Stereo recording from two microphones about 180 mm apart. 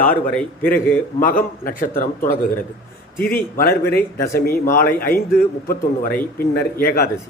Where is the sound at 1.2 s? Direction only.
50° left (ahead or behind).